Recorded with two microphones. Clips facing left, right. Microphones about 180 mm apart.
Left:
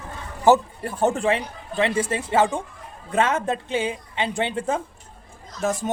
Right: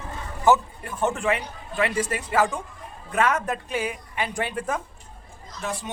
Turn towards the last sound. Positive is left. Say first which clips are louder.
# left 7 dB
turn(degrees=45)  # may be behind; listen again after turning